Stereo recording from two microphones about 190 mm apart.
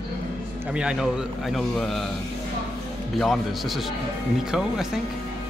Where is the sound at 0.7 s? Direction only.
5° right (ahead or behind).